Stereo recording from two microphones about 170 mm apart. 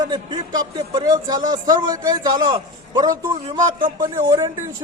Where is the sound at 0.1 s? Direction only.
25° right (ahead or behind).